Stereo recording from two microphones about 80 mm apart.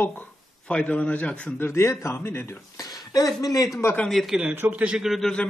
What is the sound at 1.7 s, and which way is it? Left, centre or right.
Speech, left.